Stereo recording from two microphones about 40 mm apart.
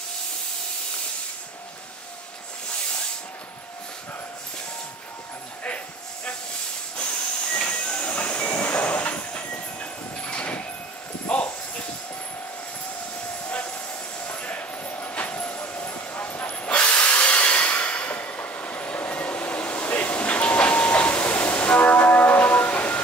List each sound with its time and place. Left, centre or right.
7.0 s train: left
11.2 s a sound: left
13.5 s train: left
14.2 s a sound: left
14.8 s train: left
15.5 s vehicle: left
16.8 s train: left